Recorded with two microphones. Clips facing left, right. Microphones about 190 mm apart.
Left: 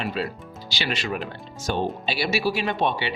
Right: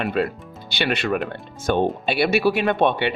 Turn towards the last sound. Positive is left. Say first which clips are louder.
# right 5 dB
turn(degrees=-55)  # may be behind; listen again after turning